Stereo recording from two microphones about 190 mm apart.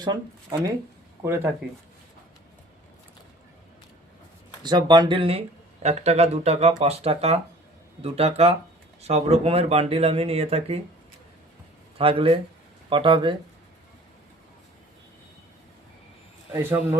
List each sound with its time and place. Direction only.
1.2 s speech: 10° right (ahead or behind)
4.6 s speech: 25° right (ahead or behind)
11.9 s speech: 30° right (ahead or behind)
16.5 s speech: 15° right (ahead or behind)